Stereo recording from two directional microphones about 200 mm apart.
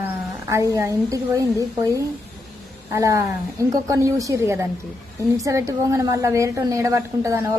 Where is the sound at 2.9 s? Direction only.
15° right (ahead or behind).